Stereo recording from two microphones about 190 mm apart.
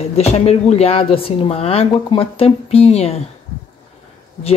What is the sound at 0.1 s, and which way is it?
A woman's voice, 35° left (ahead or behind).